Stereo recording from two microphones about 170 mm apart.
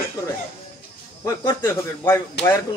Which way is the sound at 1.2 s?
15° left (ahead or behind).